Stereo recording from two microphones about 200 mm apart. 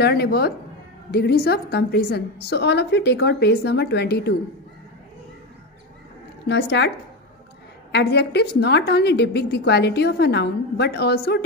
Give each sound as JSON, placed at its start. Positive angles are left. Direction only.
{"t": 0.0, "sound": "a woman's voice", "side_deg": 55}
{"t": 6.4, "sound": "a woman's voice", "side_deg": 60}
{"t": 7.9, "sound": "a woman's voice", "side_deg": 55}